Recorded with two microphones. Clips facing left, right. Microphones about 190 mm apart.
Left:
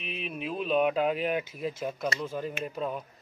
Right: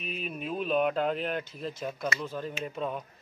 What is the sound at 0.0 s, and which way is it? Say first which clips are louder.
Speech: even; centre (ahead or behind).